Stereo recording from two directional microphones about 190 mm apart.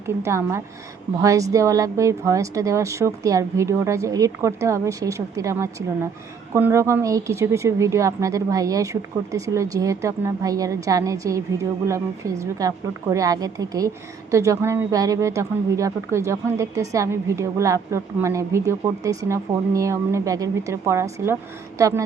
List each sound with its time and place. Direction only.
0.2 s a woman's voice: 15° right (ahead or behind)